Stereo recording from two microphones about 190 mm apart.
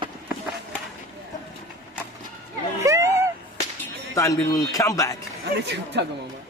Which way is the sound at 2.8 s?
15° right (ahead or behind).